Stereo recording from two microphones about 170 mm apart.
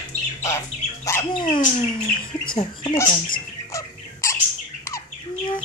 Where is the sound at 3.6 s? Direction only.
20° left (ahead or behind).